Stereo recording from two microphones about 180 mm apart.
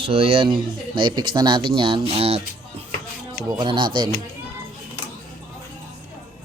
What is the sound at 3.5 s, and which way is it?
Speech, 25° right (ahead or behind).